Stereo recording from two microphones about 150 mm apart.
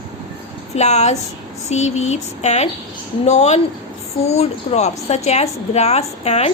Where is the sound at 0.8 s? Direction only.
50° left (ahead or behind).